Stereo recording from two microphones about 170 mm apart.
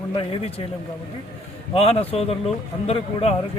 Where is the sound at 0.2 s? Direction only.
30° left (ahead or behind).